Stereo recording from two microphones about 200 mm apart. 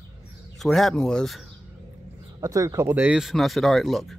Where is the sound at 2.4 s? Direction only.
15° right (ahead or behind); by 4.1 s centre (ahead or behind).